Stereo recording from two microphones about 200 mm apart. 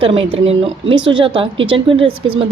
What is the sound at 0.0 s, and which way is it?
Speech, 25° right (ahead or behind).